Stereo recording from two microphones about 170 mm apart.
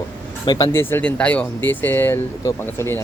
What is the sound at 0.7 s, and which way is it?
Speech, 10° left (ahead or behind).